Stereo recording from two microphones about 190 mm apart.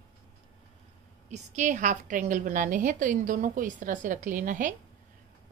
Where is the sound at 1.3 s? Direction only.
40° right (ahead or behind).